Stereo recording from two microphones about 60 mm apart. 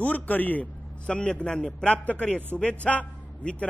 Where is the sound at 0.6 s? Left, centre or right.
Centre.